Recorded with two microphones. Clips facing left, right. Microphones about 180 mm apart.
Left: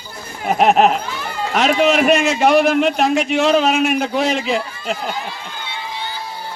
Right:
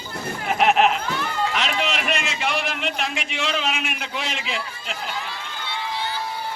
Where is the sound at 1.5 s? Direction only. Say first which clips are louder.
Left 11 dB; 45° left (ahead or behind).